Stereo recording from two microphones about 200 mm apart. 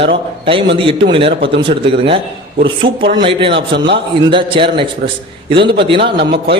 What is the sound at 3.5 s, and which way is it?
Speech, 60° right (ahead or behind).